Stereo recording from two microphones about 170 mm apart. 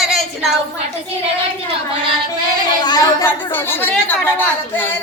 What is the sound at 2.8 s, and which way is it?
Speech, 25° left (ahead or behind).